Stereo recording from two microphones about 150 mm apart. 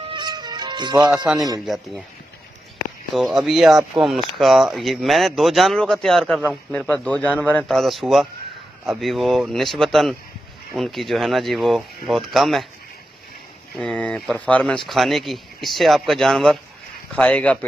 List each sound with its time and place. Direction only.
0.1 s music: 30° right (ahead or behind)
1.1 s speech: 5° right (ahead or behind)
3.2 s a man's voice: centre (ahead or behind)
13.7 s a man's voice: 5° left (ahead or behind)